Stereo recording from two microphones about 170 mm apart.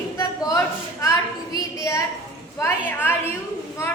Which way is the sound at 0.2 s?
20° left (ahead or behind).